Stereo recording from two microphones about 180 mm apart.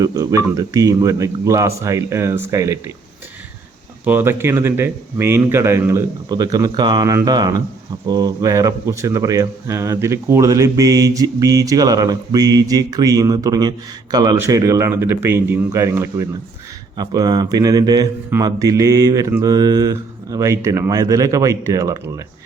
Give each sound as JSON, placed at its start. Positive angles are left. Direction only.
{"t": 0.0, "sound": "a man's voice", "side_deg": -20}
{"t": 4.0, "sound": "a man's voice", "side_deg": -10}